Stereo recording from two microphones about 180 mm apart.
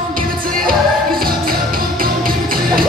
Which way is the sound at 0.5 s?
55° right (ahead or behind).